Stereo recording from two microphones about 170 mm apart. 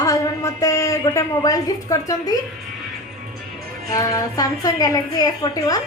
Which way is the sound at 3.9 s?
20° left (ahead or behind).